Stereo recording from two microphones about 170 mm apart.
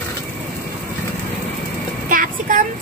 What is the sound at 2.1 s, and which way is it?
Child singing, 55° right (ahead or behind).